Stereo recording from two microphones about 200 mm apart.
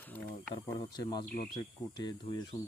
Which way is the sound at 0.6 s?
20° left (ahead or behind).